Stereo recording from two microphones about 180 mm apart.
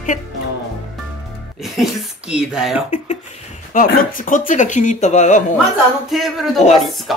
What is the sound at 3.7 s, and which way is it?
Speech, 50° left (ahead or behind).